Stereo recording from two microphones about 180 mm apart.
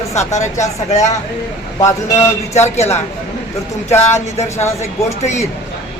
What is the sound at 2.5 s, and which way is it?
Speech, 40° left (ahead or behind).